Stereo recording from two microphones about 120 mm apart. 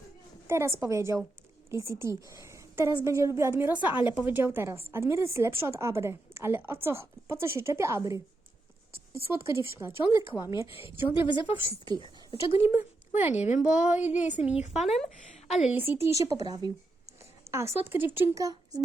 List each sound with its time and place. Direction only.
0.4 s a woman's voice: 25° right (ahead or behind)
10.7 s a woman's voice: 50° left (ahead or behind)
12.5 s speech: 20° right (ahead or behind)
13.3 s a woman's voice: 65° left (ahead or behind)
13.6 s speech: 10° right (ahead or behind)
14.9 s a woman's voice: centre (ahead or behind)
15.6 s speech: 15° right (ahead or behind)
16.2 s speech: 30° right (ahead or behind)
17.5 s speech: 20° right (ahead or behind)
18.3 s speech: 30° right (ahead or behind)